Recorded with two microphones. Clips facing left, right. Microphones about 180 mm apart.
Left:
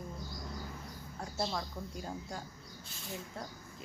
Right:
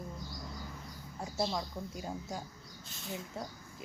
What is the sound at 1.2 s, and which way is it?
Speech, 5° right (ahead or behind).